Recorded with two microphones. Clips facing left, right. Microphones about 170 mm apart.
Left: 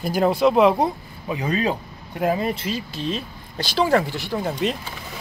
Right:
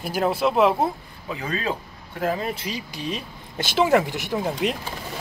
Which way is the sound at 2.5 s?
15° right (ahead or behind).